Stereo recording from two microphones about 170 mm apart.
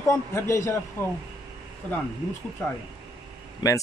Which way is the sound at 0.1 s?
15° left (ahead or behind).